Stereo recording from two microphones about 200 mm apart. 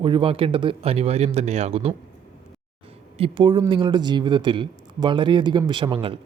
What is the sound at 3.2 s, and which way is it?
Speech, 25° right (ahead or behind).